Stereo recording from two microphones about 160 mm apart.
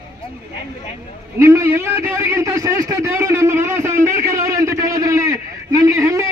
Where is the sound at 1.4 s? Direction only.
20° right (ahead or behind).